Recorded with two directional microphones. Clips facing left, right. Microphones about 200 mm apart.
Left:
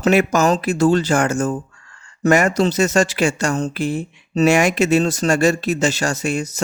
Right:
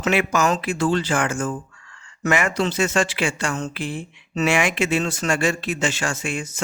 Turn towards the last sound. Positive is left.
turn(degrees=40)  # may be behind; listen again after turning